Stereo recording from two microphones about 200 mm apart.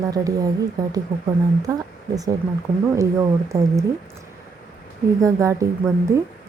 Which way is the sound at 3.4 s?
15° right (ahead or behind).